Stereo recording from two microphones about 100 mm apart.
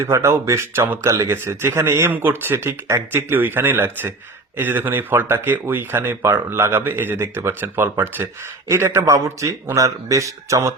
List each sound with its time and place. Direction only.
0.0 s speech: 30° right (ahead or behind)